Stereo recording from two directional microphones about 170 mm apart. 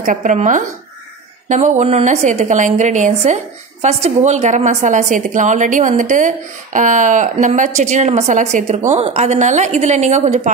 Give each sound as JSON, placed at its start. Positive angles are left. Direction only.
{"t": 0.0, "sound": "a woman's voice", "side_deg": -50}